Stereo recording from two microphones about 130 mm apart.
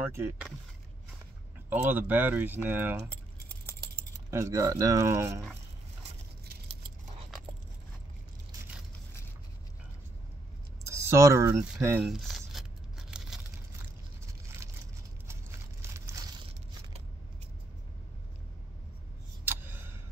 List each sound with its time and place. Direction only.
0.0 s speech: 20° right (ahead or behind)
1.7 s speech: 15° right (ahead or behind)
4.3 s speech: 25° right (ahead or behind)
10.9 s speech: 20° right (ahead or behind)
12.0 s a sound: centre (ahead or behind)
15.9 s crushing: 20° right (ahead or behind)
19.4 s a sound: 15° right (ahead or behind)